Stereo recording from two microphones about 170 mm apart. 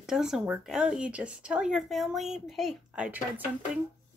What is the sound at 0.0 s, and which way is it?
Speech, 5° right (ahead or behind).